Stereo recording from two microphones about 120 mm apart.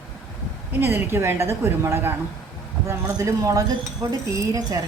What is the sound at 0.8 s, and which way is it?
A woman's voice, 20° right (ahead or behind).